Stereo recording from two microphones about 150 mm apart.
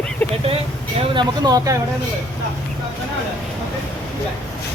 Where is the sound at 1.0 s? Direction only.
30° right (ahead or behind).